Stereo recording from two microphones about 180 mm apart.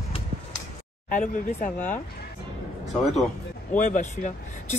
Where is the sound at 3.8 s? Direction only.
45° left (ahead or behind).